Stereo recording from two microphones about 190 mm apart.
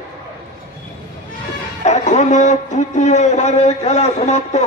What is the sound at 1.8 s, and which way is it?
A man's voice, 35° left (ahead or behind).